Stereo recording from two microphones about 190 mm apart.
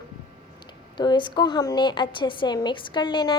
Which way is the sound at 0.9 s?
25° left (ahead or behind).